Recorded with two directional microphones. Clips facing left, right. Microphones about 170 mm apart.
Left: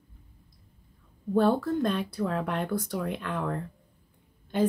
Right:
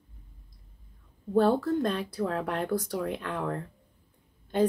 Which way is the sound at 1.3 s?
35° right (ahead or behind).